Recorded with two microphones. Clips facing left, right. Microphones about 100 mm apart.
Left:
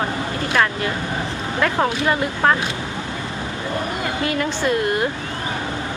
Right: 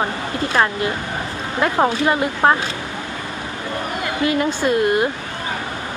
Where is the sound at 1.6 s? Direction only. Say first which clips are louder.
Right 3 dB; 25° right (ahead or behind).